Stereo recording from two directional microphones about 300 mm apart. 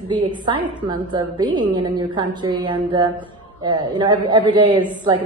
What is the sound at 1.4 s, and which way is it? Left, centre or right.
A man's voice, centre.